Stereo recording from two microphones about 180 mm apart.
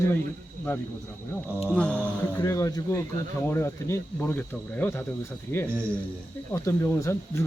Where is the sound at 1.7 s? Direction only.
5° left (ahead or behind).